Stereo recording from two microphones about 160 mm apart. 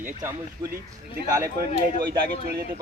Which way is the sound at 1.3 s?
20° right (ahead or behind).